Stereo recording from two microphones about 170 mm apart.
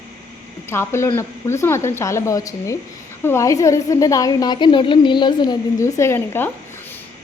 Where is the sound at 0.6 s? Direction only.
15° left (ahead or behind).